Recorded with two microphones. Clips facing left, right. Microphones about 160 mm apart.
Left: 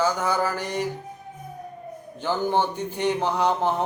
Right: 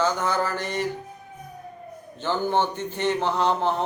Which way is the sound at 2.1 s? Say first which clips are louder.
Even; 10° left (ahead or behind).